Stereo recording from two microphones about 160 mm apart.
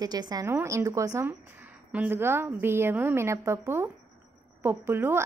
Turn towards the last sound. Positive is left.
turn(degrees=-15)  # may be behind; listen again after turning